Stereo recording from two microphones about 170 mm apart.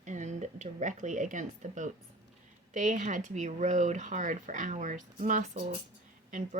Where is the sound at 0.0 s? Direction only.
45° right (ahead or behind).